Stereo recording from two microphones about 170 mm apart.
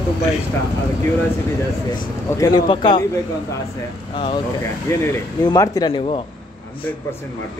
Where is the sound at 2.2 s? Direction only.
20° left (ahead or behind).